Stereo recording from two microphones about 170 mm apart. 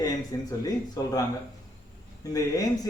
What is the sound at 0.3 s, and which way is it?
Speech, 20° left (ahead or behind).